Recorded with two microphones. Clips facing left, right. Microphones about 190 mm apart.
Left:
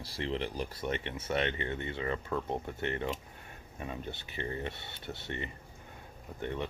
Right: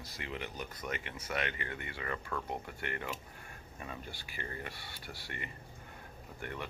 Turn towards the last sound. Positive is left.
turn(degrees=20)  # may be behind; listen again after turning